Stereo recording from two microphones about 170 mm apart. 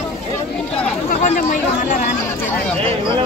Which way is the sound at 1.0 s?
50° left (ahead or behind).